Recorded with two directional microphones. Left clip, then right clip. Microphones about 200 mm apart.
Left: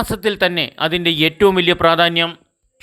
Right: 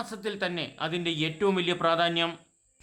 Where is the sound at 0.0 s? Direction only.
35° left (ahead or behind).